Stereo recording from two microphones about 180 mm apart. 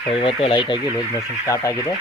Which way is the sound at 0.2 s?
30° left (ahead or behind).